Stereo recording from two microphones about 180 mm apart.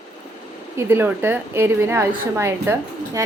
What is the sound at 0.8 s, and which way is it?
Speech, 10° right (ahead or behind).